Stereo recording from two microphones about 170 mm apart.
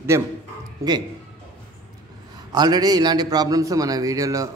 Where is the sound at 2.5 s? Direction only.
25° right (ahead or behind).